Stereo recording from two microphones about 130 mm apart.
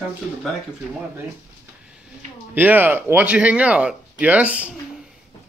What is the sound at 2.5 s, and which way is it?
Speech, 15° right (ahead or behind).